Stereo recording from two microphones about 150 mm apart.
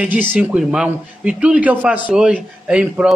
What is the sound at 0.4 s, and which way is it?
A man's voice, 5° right (ahead or behind).